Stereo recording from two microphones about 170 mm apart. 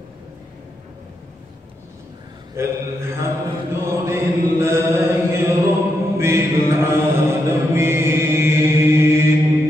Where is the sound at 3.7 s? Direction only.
15° right (ahead or behind).